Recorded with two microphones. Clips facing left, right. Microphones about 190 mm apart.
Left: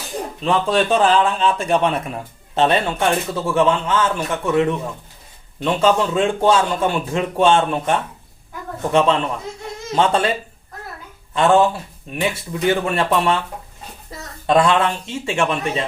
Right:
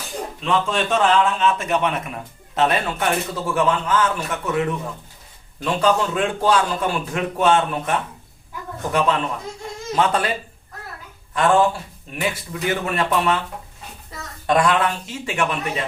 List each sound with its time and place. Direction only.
0.4 s a man's voice: 35° left (ahead or behind)
11.3 s a man's voice: 25° left (ahead or behind)
14.4 s a man's voice: 25° left (ahead or behind)